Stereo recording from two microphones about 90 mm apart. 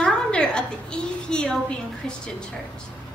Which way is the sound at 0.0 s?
10° left (ahead or behind).